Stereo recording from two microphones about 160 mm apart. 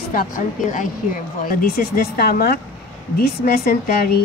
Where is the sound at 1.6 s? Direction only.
65° left (ahead or behind).